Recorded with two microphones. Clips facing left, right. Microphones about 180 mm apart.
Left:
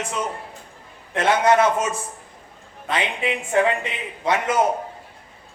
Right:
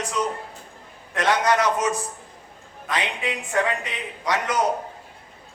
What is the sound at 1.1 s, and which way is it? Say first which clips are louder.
Speech: left 4 dB; 25° left (ahead or behind).